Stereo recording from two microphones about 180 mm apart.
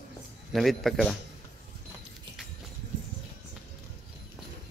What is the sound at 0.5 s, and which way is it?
Speech, centre (ahead or behind).